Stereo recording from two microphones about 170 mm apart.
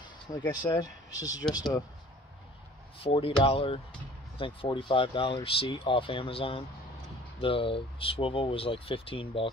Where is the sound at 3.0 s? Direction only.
30° left (ahead or behind).